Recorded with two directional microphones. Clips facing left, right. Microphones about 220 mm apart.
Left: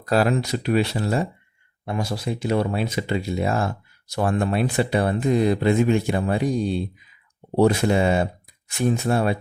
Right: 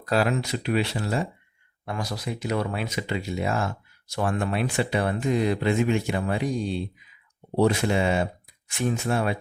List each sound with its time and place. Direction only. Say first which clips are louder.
0.1 s speech: left 4 dB; 40° left (ahead or behind)
1.8 s speech: left 5 dB; 25° left (ahead or behind)